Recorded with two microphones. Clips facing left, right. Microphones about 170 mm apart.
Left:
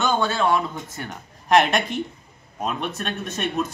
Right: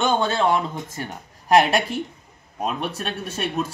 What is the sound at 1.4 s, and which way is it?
Speech, 35° right (ahead or behind).